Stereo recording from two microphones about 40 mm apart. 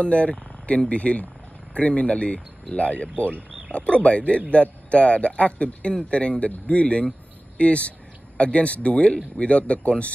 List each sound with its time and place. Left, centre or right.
0.0 s a man's voice: left